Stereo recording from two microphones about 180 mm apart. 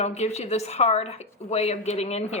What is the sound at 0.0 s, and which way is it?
A woman's voice, 35° left (ahead or behind).